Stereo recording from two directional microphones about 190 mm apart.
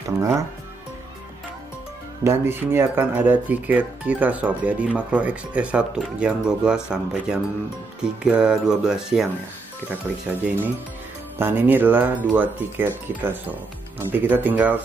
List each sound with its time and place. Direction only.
0.2 s speech: 15° right (ahead or behind)
2.2 s speech: 10° right (ahead or behind)
10.4 s speech: 10° right (ahead or behind)